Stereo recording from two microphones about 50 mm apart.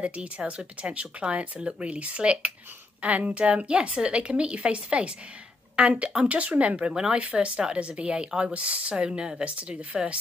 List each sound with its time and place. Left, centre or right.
0.0 s a woman's voice: right
6.9 s a woman's voice: centre